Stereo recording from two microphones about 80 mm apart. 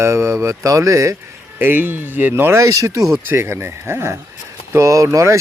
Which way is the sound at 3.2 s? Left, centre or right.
Right.